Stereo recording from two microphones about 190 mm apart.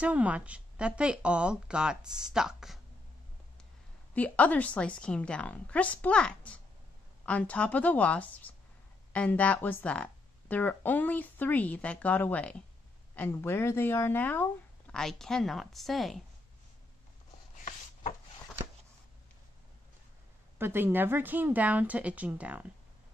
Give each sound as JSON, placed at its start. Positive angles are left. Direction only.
{"t": 0.0, "sound": "speech", "side_deg": -5}
{"t": 4.1, "sound": "speech", "side_deg": 10}
{"t": 17.6, "sound": "chopping", "side_deg": 40}
{"t": 20.5, "sound": "speech", "side_deg": -10}